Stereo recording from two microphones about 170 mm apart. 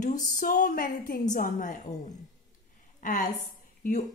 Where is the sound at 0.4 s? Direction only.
50° left (ahead or behind).